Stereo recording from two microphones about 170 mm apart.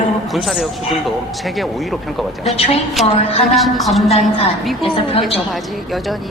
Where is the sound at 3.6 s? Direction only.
Centre (ahead or behind).